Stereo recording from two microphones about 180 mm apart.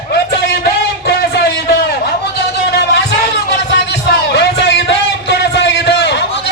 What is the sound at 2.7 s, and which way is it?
Music, 65° left (ahead or behind).